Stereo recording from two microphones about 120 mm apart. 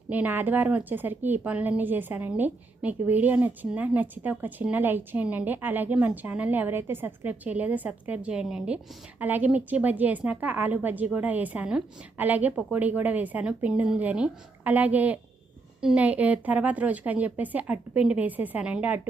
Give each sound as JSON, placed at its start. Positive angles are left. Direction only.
{"t": 0.1, "sound": "a woman's voice", "side_deg": -15}